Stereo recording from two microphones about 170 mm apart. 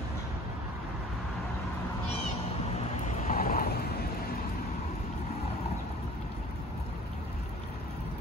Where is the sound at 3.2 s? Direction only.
55° left (ahead or behind).